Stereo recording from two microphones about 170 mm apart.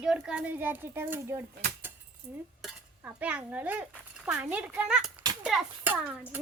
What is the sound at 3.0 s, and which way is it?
Speech, 5° right (ahead or behind).